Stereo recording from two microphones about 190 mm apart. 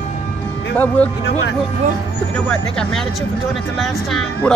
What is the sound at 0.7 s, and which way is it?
Speech, 10° left (ahead or behind).